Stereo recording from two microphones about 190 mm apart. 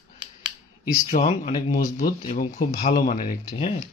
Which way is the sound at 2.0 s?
50° left (ahead or behind).